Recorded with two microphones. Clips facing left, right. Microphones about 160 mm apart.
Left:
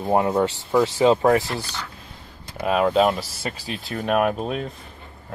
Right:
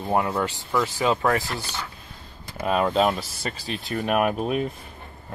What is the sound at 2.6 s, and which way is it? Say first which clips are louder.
Speech: left 3 dB; 5° left (ahead or behind).